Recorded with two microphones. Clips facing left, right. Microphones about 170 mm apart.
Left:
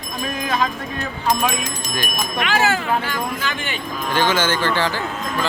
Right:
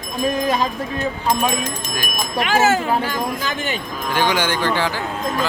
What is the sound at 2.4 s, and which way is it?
Speech, 45° right (ahead or behind).